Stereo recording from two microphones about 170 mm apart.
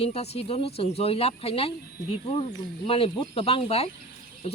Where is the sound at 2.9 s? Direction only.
35° left (ahead or behind).